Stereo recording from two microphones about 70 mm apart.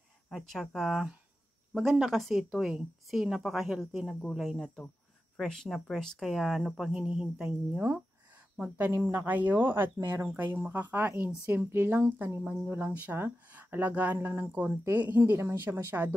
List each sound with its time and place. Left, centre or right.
0.3 s a woman's voice: centre
4.1 s a woman's voice: centre
8.9 s speech: right